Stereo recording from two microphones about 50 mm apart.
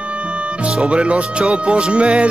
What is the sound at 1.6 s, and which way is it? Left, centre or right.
Music, right.